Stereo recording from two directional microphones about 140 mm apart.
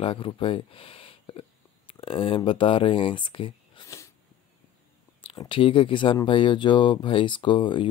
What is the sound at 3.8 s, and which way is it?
Dog, 20° left (ahead or behind).